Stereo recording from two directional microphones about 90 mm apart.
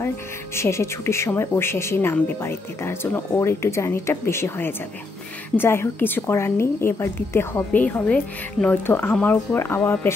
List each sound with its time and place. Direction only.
0.6 s a woman's voice: 30° left (ahead or behind)